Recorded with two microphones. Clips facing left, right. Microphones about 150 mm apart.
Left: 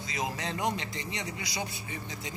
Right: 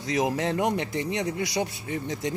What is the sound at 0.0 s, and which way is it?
A man's voice, 75° right (ahead or behind).